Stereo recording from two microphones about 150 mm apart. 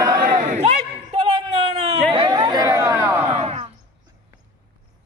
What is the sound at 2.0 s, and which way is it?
Chatter, 35° right (ahead or behind).